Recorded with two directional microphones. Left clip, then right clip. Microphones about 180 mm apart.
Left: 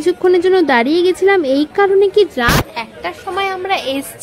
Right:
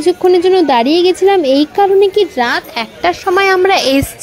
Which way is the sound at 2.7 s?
35° right (ahead or behind).